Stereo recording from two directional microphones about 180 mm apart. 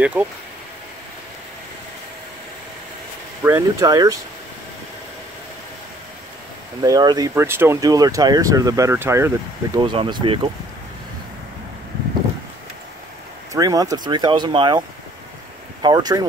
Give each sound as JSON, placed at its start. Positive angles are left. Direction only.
{"t": 0.0, "sound": "speech", "side_deg": -5}
{"t": 3.4, "sound": "speech", "side_deg": -15}
{"t": 6.8, "sound": "speech", "side_deg": -20}
{"t": 9.8, "sound": "speech", "side_deg": -25}
{"t": 13.5, "sound": "speech", "side_deg": -20}
{"t": 15.8, "sound": "speech", "side_deg": -20}